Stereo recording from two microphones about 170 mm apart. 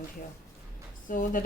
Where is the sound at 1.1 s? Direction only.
50° left (ahead or behind).